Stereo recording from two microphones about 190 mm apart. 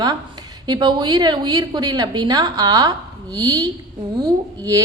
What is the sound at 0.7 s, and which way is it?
A woman's voice, 25° right (ahead or behind).